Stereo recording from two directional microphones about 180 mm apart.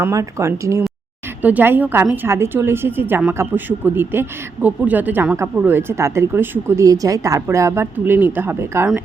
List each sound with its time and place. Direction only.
0.0 s a woman's voice: 15° right (ahead or behind)